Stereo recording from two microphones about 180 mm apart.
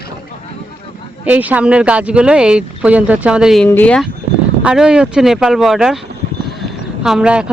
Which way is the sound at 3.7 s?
10° left (ahead or behind).